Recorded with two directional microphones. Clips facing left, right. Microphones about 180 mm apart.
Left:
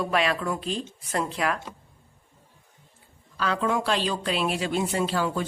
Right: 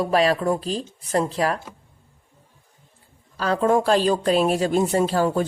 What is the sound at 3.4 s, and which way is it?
Speech, 40° right (ahead or behind).